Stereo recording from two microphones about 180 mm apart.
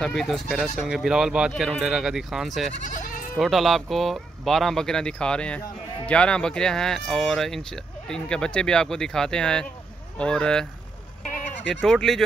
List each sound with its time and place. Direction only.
0.0 s speech: centre (ahead or behind)
2.8 s goat: 45° left (ahead or behind)
3.3 s speech: centre (ahead or behind)
11.7 s speech: centre (ahead or behind)